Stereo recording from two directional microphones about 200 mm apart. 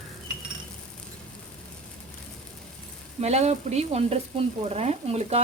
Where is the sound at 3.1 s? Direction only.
35° right (ahead or behind).